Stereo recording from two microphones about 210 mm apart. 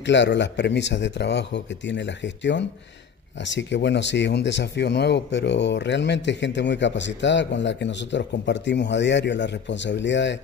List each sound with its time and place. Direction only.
0.0 s speech: 60° left (ahead or behind)